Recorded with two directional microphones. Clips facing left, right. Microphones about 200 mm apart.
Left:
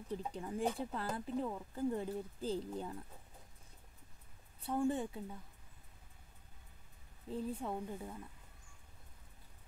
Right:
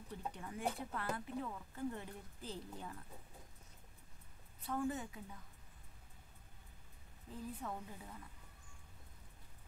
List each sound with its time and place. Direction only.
0.3 s speech: 30° left (ahead or behind)
4.6 s a woman's voice: 30° left (ahead or behind)
7.2 s a woman's voice: 30° left (ahead or behind)